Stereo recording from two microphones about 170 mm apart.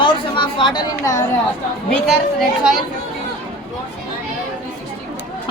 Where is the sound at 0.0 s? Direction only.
30° left (ahead or behind).